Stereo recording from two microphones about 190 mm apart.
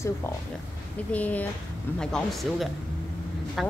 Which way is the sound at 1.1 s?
10° left (ahead or behind).